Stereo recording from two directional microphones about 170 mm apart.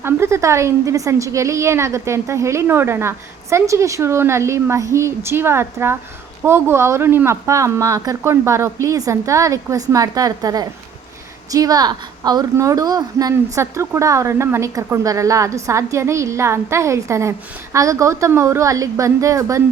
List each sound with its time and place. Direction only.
0.0 s a woman's voice: 15° right (ahead or behind)